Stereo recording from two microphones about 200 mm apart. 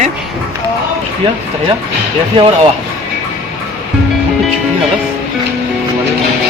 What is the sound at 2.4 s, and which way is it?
Speech, 25° right (ahead or behind).